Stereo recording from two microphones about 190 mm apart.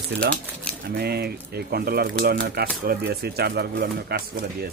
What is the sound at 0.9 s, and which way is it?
Speech, 55° right (ahead or behind).